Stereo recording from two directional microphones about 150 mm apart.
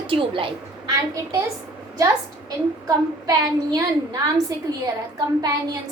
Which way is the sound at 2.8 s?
25° right (ahead or behind).